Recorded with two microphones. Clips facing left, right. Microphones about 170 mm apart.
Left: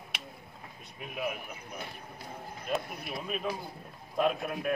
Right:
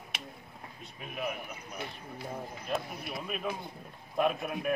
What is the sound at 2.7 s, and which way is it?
Speech, centre (ahead or behind).